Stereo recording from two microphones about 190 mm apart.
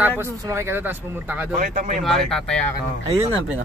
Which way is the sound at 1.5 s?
45° right (ahead or behind).